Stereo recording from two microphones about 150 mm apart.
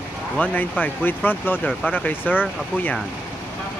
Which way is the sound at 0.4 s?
10° left (ahead or behind).